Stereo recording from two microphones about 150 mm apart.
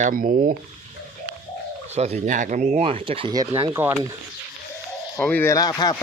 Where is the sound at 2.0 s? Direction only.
45° right (ahead or behind).